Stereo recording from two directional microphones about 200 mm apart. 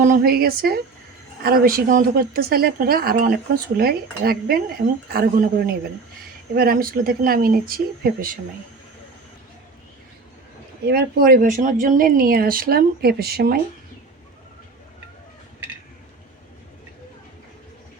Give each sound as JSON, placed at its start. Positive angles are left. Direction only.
{"t": 0.0, "sound": "a woman's voice", "side_deg": -45}
{"t": 10.8, "sound": "a woman's voice", "side_deg": -50}